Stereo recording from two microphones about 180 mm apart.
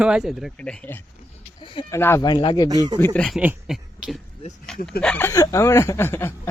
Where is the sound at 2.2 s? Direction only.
25° left (ahead or behind).